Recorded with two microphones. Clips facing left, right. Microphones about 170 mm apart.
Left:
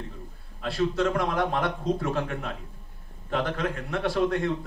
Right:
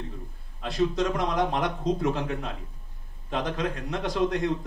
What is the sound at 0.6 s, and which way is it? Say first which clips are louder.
A man's voice: even; 20° right (ahead or behind).